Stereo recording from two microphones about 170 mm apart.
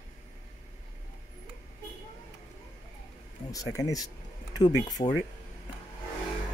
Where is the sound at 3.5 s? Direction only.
20° left (ahead or behind).